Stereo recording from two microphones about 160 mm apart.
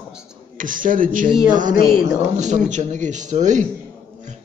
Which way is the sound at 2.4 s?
50° right (ahead or behind).